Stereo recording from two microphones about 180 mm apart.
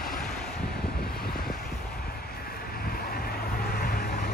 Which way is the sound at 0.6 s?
60° left (ahead or behind).